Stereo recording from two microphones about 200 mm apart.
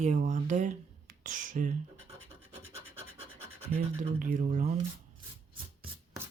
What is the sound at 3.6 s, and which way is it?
Speech, 35° right (ahead or behind).